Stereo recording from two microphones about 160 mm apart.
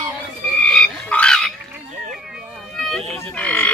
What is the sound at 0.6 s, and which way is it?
Frog, 5° left (ahead or behind).